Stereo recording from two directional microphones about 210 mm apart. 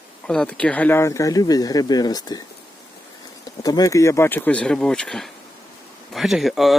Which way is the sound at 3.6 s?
15° left (ahead or behind).